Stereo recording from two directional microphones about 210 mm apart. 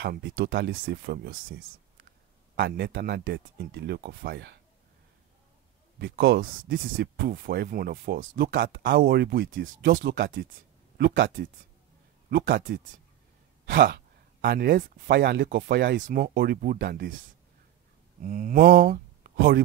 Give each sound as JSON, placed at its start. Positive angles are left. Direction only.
{"t": 0.0, "sound": "speech", "side_deg": -55}
{"t": 5.9, "sound": "speech", "side_deg": -50}
{"t": 18.2, "sound": "speech", "side_deg": -40}